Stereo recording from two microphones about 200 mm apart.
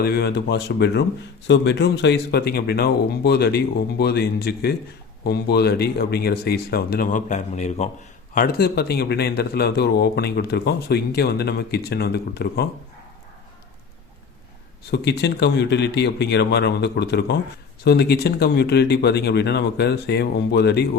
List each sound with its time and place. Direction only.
0.0 s a man's voice: 55° left (ahead or behind); by 7.9 s 35° left (ahead or behind)
8.4 s a man's voice: 50° left (ahead or behind)
14.8 s speech: 55° left (ahead or behind)